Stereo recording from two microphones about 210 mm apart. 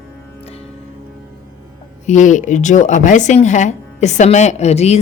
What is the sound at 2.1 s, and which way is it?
Speech, 35° left (ahead or behind).